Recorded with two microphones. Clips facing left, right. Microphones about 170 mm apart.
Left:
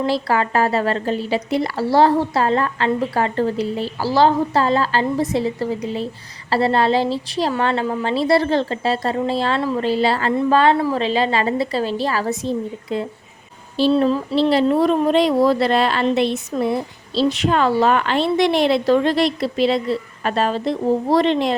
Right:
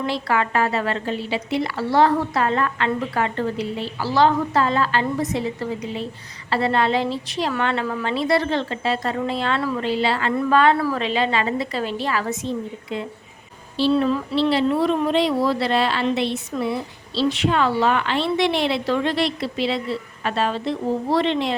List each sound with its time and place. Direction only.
0.0 s speech: 35° left (ahead or behind)
9.8 s a woman's voice: 40° left (ahead or behind)